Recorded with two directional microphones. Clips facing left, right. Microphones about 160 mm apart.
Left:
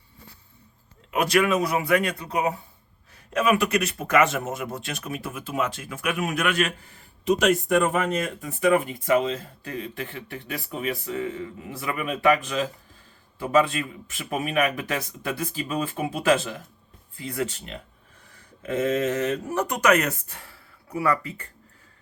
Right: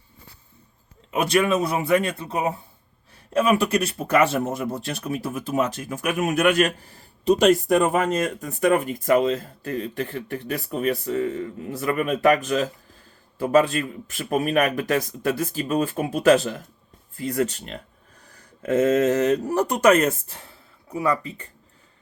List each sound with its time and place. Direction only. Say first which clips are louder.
1.3 s a man's voice: right 1 dB; 25° right (ahead or behind)